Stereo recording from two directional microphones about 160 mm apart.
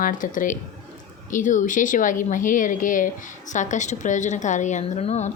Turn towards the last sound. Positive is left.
turn(degrees=45)  # may be behind; listen again after turning